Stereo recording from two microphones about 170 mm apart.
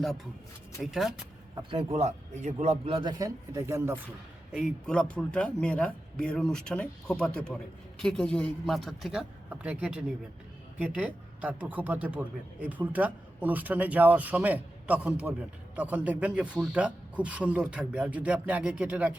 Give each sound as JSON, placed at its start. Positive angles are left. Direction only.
{"t": 0.8, "sound": "speech", "side_deg": 0}
{"t": 1.5, "sound": "speech", "side_deg": -30}
{"t": 4.5, "sound": "a man's voice", "side_deg": 5}